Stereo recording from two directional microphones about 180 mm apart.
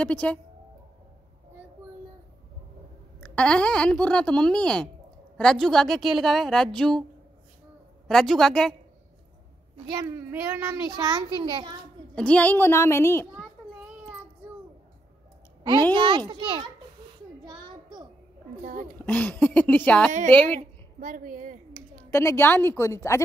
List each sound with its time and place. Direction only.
0.0 s a woman's voice: 5° left (ahead or behind)
3.2 s speech: 5° left (ahead or behind)
8.1 s speech: centre (ahead or behind)
9.8 s a child's voice: 15° right (ahead or behind)
12.2 s a woman's voice: 5° left (ahead or behind)
15.9 s a child's voice: 25° right (ahead or behind)
17.5 s a sound: 25° right (ahead or behind)
18.6 s speech: 50° right (ahead or behind)
19.0 s a woman's voice: 10° left (ahead or behind)
21.0 s a sound: 50° right (ahead or behind)
22.1 s a woman's voice: 15° left (ahead or behind)